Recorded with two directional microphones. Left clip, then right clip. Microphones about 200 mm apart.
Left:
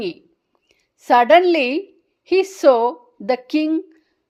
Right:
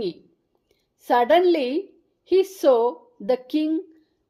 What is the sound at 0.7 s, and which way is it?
A woman's voice, 20° left (ahead or behind).